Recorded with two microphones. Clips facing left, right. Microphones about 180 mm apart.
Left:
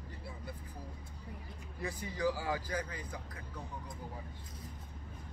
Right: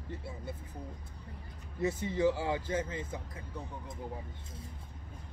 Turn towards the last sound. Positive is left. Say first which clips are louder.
# right 5 dB
turn(degrees=-25)  # may be behind; listen again after turning